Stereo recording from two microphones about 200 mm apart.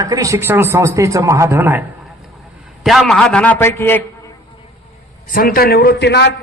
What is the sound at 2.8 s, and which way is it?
A man's voice, centre (ahead or behind).